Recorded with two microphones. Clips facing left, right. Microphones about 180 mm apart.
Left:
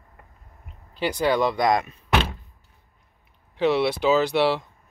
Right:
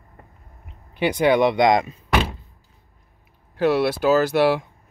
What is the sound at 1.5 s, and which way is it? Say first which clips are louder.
Speech: right 4 dB; 90° right.